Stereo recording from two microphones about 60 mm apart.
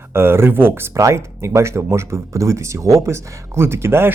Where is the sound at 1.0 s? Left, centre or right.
Right.